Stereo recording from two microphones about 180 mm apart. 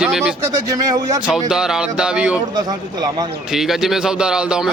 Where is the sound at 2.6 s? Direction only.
20° right (ahead or behind).